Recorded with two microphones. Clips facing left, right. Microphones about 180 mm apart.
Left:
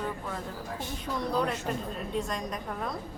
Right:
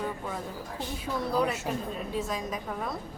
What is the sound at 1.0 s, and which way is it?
A woman's voice, 5° right (ahead or behind).